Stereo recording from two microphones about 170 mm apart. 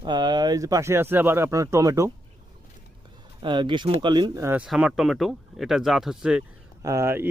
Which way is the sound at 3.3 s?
30° right (ahead or behind).